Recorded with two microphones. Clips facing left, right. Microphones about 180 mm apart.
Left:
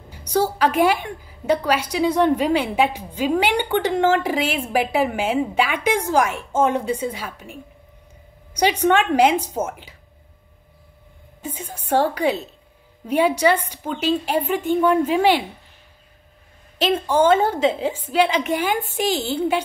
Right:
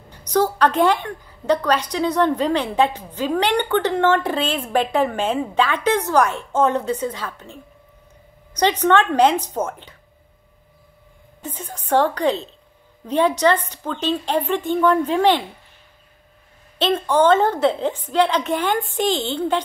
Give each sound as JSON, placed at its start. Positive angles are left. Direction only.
{"t": 0.1, "sound": "a woman's voice", "side_deg": 10}
{"t": 8.5, "sound": "a woman's voice", "side_deg": 10}
{"t": 11.4, "sound": "a woman's voice", "side_deg": 10}
{"t": 16.7, "sound": "a woman's voice", "side_deg": 10}